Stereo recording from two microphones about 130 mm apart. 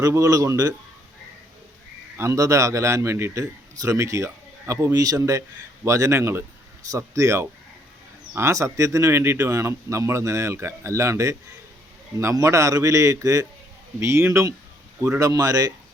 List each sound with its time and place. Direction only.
0.0 s a man's voice: 25° right (ahead or behind)
2.1 s a man's voice: 20° right (ahead or behind)